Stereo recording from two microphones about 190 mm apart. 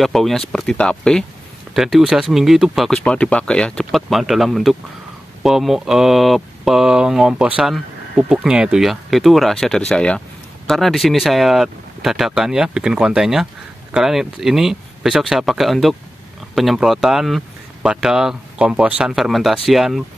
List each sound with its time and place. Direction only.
0.0 s speech: centre (ahead or behind)